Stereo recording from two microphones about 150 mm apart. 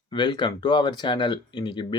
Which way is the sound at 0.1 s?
30° left (ahead or behind).